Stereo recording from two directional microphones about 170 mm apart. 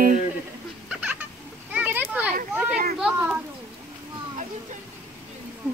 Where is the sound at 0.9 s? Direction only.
10° right (ahead or behind).